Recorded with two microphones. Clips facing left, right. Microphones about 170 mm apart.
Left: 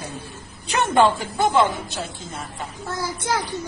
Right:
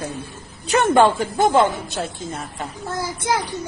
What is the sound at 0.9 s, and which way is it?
Speech, 45° right (ahead or behind).